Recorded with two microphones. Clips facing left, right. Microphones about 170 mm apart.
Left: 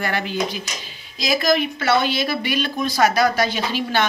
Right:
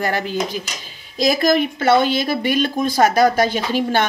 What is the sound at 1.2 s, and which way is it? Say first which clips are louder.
Speech: right 4 dB; 50° right (ahead or behind).